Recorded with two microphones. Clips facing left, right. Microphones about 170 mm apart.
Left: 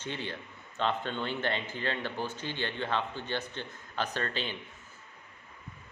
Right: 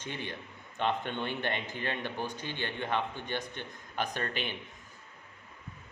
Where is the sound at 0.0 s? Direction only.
15° right (ahead or behind).